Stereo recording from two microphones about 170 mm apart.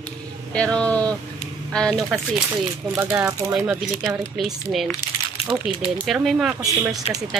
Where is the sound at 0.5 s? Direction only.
5° left (ahead or behind).